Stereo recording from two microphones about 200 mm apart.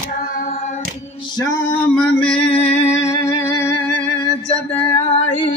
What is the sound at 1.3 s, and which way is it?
Male singing, 20° left (ahead or behind).